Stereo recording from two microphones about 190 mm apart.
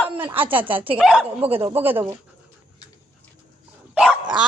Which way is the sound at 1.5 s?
30° right (ahead or behind).